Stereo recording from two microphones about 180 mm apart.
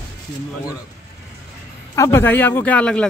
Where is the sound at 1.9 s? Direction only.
15° left (ahead or behind).